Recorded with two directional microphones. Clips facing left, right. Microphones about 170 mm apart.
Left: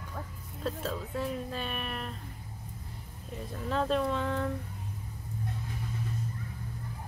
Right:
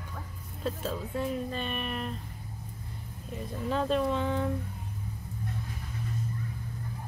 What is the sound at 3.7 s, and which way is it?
Speech, 5° right (ahead or behind).